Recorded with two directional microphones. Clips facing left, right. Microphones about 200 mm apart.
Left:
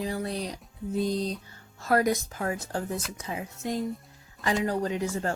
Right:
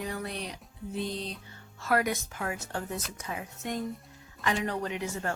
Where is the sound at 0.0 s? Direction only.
30° left (ahead or behind).